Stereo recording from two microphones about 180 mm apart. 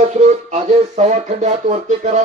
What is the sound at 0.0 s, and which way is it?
Speech, 40° right (ahead or behind).